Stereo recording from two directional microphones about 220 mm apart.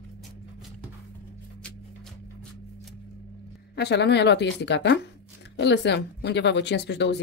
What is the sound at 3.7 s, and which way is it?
Speech, 50° left (ahead or behind).